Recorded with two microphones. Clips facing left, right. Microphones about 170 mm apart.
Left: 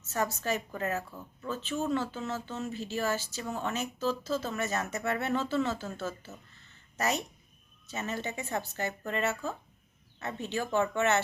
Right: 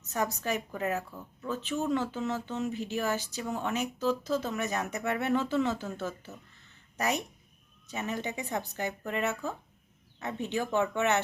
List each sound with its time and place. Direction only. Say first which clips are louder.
0.0 s speech: even; 15° right (ahead or behind)